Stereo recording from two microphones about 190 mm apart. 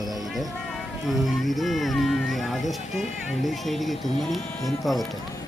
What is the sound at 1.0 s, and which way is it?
Speech, centre (ahead or behind).